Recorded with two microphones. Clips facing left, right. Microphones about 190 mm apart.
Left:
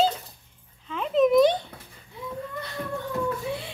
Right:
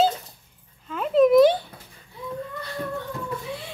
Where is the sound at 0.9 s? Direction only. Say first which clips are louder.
Right 3 dB; centre (ahead or behind).